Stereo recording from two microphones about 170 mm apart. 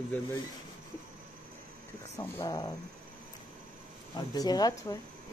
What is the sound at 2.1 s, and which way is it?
Speech, 15° left (ahead or behind).